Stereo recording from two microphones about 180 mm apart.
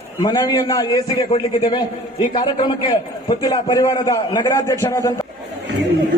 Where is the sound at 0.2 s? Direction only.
20° left (ahead or behind).